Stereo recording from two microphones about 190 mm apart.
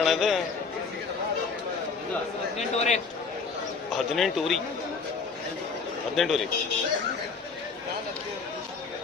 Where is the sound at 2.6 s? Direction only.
35° left (ahead or behind).